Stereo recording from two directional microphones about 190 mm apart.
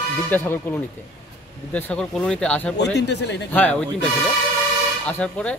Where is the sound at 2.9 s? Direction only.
65° left (ahead or behind).